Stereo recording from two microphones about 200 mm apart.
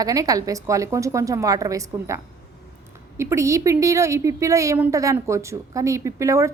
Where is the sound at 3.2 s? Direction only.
15° right (ahead or behind).